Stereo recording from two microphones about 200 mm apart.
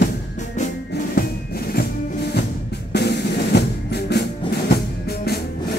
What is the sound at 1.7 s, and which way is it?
Music, 50° left (ahead or behind).